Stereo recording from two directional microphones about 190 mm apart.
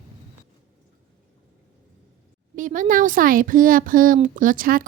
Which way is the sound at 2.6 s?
45° right (ahead or behind).